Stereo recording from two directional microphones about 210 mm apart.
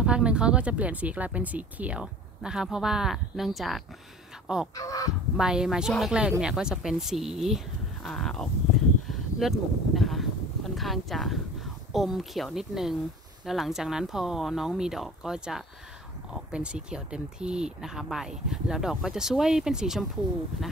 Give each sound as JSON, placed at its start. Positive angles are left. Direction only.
{"t": 0.0, "sound": "speech", "side_deg": -5}
{"t": 4.7, "sound": "speech", "side_deg": 15}
{"t": 5.4, "sound": "speech", "side_deg": -5}
{"t": 9.0, "sound": "a sound", "side_deg": 0}
{"t": 13.5, "sound": "speech", "side_deg": 0}